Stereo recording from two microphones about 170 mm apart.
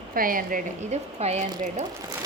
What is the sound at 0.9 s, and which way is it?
Speech, 40° right (ahead or behind).